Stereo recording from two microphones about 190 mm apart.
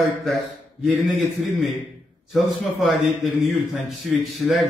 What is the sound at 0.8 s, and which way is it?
A man's voice, centre (ahead or behind).